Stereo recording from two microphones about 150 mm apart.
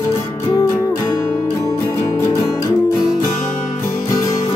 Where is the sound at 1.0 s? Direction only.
20° left (ahead or behind).